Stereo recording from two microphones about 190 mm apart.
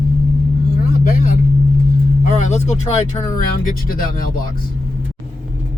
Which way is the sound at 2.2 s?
40° left (ahead or behind).